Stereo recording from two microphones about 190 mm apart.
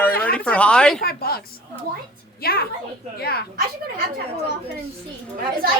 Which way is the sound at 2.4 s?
55° left (ahead or behind).